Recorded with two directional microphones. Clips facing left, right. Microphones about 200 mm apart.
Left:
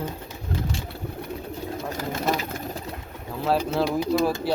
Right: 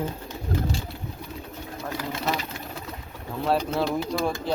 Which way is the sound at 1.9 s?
45° left (ahead or behind).